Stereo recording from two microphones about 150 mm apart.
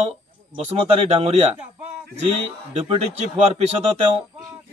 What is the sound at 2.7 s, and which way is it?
Speech, 45° right (ahead or behind).